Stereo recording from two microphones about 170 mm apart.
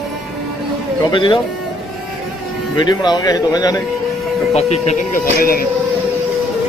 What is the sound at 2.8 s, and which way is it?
Speech, 25° left (ahead or behind).